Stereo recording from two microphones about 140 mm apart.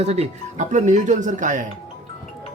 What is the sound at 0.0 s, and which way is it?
Speech, 50° right (ahead or behind).